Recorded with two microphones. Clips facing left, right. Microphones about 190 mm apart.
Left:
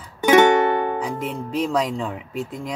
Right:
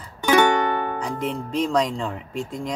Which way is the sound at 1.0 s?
Centre (ahead or behind).